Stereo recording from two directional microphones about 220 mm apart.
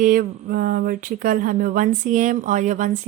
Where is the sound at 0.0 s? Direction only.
40° right (ahead or behind).